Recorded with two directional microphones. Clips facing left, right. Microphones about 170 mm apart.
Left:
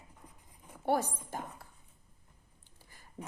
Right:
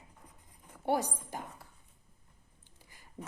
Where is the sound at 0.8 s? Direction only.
15° right (ahead or behind).